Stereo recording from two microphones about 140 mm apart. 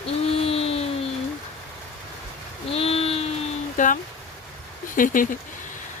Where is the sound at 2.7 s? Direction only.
45° left (ahead or behind).